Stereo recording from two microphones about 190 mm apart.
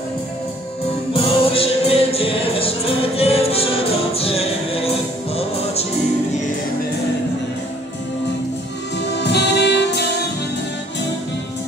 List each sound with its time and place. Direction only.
1.1 s music: 30° left (ahead or behind)
8.9 s music: 65° left (ahead or behind)